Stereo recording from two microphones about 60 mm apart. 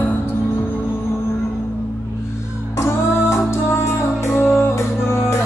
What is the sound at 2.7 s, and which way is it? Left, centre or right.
Music, left.